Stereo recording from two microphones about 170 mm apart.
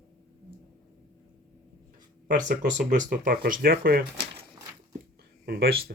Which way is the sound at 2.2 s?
50° right (ahead or behind).